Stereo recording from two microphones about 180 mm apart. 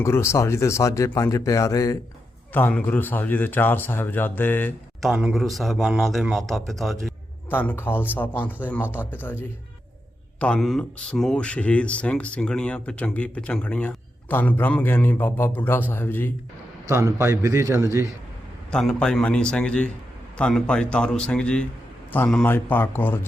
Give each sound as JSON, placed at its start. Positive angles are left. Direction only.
{"t": 0.0, "sound": "speech", "side_deg": 15}
{"t": 5.0, "sound": "a man's voice", "side_deg": -5}
{"t": 16.9, "sound": "a man's voice", "side_deg": -15}
{"t": 18.7, "sound": "a man's voice", "side_deg": 5}